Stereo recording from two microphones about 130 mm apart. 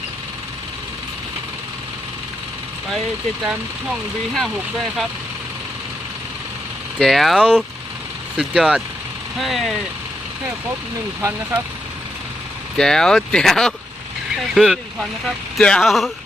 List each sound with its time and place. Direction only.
4.4 s speech: centre (ahead or behind)
7.0 s speech: centre (ahead or behind)
11.2 s speech: 20° right (ahead or behind)
12.7 s speech: 5° left (ahead or behind)